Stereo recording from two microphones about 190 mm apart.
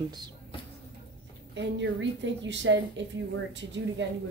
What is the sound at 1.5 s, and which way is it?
A woman's voice, 70° right (ahead or behind).